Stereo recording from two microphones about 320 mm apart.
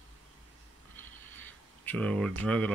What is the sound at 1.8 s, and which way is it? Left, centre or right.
Speech, centre.